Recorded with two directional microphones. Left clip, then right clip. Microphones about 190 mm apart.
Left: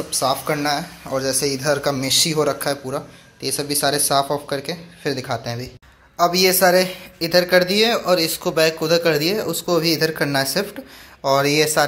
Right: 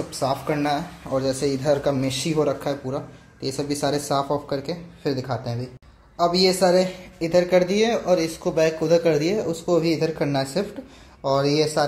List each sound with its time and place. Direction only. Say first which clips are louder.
0.1 s speech: left 5 dB; 5° right (ahead or behind)
1.1 s speech: left 1 dB; 10° left (ahead or behind)
1.4 s speech: left 1 dB; 5° right (ahead or behind)
6.1 s a woman's voice: left 3 dB; 25° left (ahead or behind)
6.6 s speech: left 3 dB; centre (ahead or behind)